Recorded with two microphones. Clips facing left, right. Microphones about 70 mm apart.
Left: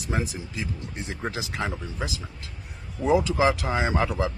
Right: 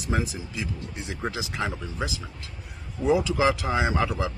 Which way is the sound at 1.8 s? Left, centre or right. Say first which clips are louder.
Right 1 dB; right.